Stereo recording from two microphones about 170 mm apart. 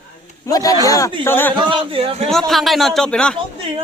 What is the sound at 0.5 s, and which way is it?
Speech, 20° left (ahead or behind).